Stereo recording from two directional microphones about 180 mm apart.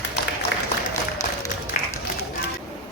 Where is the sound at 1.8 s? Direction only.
50° left (ahead or behind).